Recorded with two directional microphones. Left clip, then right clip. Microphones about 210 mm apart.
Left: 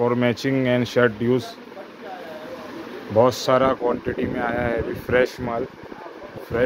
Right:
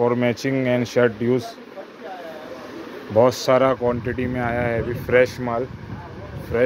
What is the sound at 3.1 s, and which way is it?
Speech, 5° right (ahead or behind).